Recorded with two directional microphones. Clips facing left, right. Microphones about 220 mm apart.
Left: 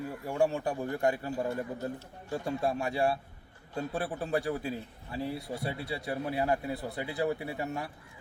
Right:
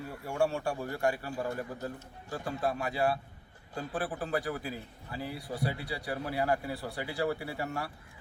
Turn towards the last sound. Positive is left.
turn(degrees=20)  # may be behind; listen again after turning